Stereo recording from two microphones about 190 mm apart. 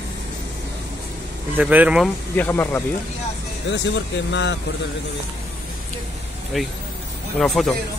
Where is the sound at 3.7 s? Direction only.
75° left (ahead or behind).